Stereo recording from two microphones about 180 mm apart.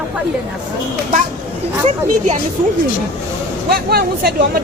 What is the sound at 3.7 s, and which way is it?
Speech, 60° right (ahead or behind).